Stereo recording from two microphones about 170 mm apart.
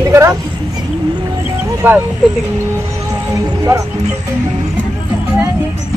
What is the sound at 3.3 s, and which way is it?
Speech, 20° right (ahead or behind).